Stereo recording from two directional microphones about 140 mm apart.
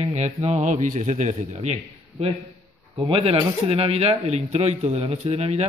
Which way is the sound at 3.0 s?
40° right (ahead or behind).